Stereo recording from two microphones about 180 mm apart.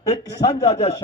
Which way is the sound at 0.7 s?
35° left (ahead or behind).